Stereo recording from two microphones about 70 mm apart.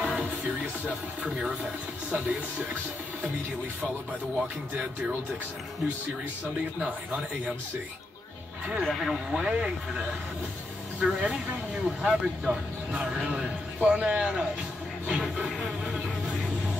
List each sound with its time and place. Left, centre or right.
0.0 s music: centre
0.8 s speech: centre
8.8 s speech: centre
15.0 s music: centre